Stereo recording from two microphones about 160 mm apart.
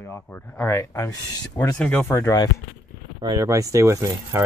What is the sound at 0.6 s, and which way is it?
Speech, 15° left (ahead or behind).